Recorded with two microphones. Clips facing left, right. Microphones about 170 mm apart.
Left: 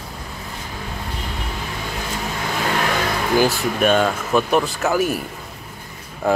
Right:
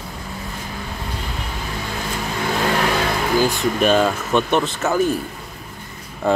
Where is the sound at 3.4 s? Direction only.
Centre (ahead or behind).